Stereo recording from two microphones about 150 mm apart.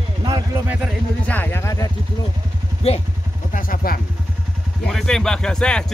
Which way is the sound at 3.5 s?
75° left (ahead or behind).